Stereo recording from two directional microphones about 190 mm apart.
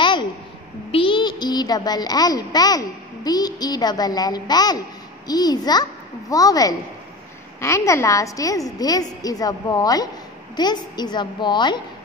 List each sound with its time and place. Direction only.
0.9 s a woman's voice: 25° left (ahead or behind)